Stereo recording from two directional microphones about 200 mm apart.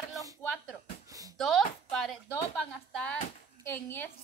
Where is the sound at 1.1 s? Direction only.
15° right (ahead or behind).